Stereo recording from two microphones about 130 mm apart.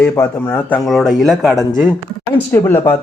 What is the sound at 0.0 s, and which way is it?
Speech, 10° left (ahead or behind).